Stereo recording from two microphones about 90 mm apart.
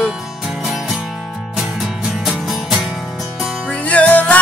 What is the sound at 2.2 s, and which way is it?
Music, centre (ahead or behind).